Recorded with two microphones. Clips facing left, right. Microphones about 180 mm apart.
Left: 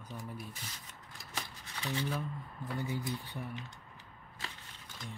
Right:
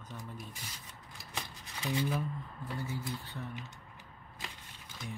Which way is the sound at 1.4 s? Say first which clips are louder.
Right 1 dB; 20° right (ahead or behind).